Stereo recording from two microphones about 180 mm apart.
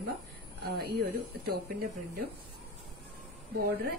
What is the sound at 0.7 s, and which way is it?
A woman's voice, 60° right (ahead or behind).